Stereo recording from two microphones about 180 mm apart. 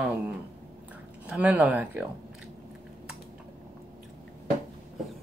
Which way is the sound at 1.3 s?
5° right (ahead or behind).